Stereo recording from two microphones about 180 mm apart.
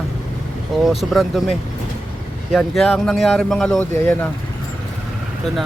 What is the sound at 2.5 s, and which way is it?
Speech, centre (ahead or behind).